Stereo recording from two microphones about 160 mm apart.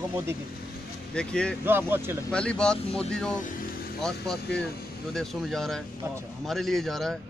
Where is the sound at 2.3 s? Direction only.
5° left (ahead or behind).